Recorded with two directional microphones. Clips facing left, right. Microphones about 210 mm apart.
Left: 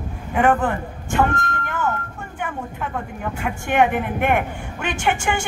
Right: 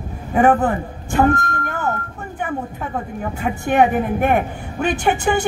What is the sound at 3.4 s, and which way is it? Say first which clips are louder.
A woman's voice: right 3 dB; 40° right (ahead or behind).